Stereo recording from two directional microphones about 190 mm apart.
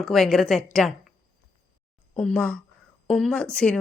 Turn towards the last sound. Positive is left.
turn(degrees=5)  # may be behind; listen again after turning